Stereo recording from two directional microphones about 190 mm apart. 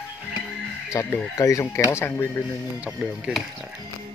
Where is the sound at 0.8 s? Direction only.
15° left (ahead or behind).